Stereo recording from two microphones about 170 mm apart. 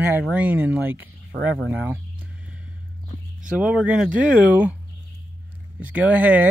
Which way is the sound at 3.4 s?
5° right (ahead or behind).